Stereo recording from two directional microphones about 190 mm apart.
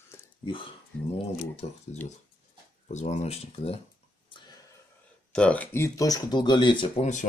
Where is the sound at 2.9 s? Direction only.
35° left (ahead or behind).